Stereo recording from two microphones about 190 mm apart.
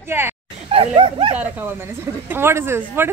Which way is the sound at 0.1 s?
10° right (ahead or behind).